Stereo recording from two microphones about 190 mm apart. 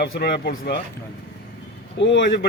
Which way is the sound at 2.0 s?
70° left (ahead or behind).